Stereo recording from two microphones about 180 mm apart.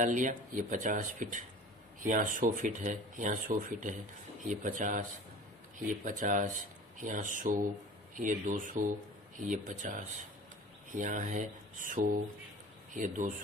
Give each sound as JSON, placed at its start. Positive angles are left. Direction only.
{"t": 0.0, "sound": "speech", "side_deg": -45}
{"t": 6.0, "sound": "speech", "side_deg": -45}